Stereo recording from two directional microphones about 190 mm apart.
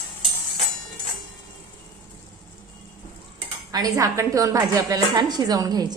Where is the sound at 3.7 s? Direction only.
20° right (ahead or behind).